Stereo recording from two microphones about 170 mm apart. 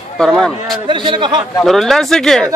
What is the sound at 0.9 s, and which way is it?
Speech, 30° right (ahead or behind).